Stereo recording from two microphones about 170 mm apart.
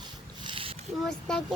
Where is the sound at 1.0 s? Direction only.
5° left (ahead or behind).